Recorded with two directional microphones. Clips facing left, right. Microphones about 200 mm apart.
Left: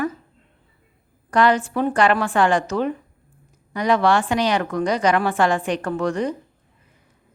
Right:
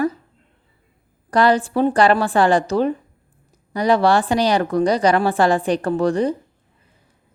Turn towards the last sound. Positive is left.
turn(degrees=-35)  # may be behind; listen again after turning